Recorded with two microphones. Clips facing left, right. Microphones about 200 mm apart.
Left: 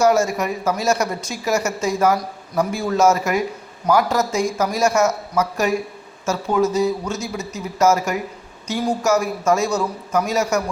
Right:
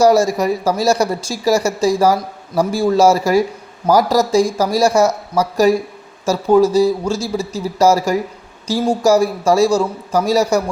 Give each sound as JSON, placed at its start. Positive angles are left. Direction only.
{"t": 0.0, "sound": "speech", "side_deg": -35}